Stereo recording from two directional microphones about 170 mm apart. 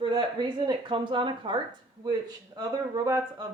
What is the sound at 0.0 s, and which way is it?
Speech, 25° right (ahead or behind).